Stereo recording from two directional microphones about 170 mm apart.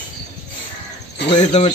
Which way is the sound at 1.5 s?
40° left (ahead or behind).